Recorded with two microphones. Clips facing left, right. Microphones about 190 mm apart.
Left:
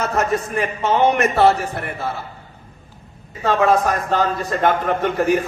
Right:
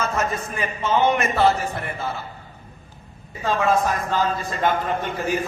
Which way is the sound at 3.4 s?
70° left (ahead or behind).